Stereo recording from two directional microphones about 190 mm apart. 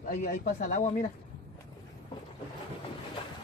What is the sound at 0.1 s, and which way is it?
Speech, 50° left (ahead or behind).